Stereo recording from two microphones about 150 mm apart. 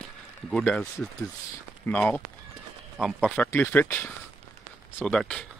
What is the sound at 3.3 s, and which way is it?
Speech, 15° left (ahead or behind).